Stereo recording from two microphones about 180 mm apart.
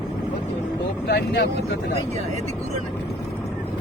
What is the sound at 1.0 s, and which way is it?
Speech, 65° left (ahead or behind).